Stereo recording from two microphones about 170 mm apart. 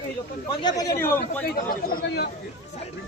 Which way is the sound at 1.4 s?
60° left (ahead or behind).